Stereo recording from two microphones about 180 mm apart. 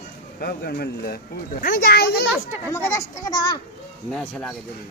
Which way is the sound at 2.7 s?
15° left (ahead or behind).